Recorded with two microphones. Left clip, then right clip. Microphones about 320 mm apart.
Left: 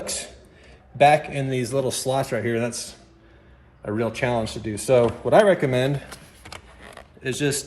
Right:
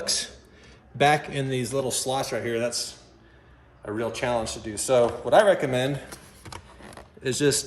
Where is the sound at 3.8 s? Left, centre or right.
Centre.